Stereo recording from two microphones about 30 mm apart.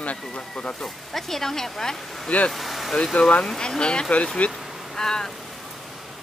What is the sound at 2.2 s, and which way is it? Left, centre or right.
Speech, left.